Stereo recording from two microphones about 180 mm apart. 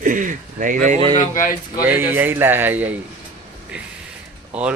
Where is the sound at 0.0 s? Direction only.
45° right (ahead or behind).